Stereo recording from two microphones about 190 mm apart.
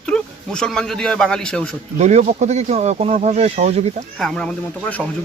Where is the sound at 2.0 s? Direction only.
35° right (ahead or behind).